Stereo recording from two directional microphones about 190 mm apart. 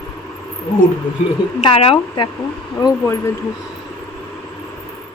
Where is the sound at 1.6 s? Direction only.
30° left (ahead or behind).